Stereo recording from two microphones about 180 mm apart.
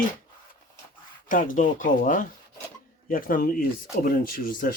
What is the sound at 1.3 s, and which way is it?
Speech, 50° left (ahead or behind).